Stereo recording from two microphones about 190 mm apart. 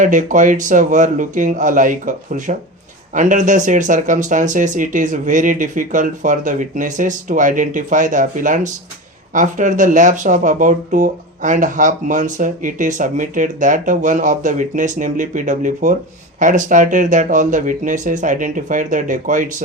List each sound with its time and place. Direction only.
0.0 s a man's voice: 40° right (ahead or behind)